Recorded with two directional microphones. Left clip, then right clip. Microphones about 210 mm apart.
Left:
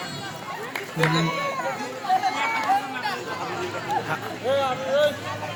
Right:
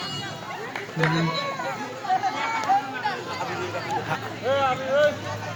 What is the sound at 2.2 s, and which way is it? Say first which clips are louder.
Run: left 2 dB; 55° left (ahead or behind).